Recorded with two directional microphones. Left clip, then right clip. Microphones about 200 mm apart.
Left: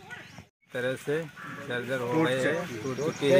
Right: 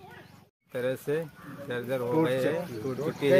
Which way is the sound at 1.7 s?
25° right (ahead or behind).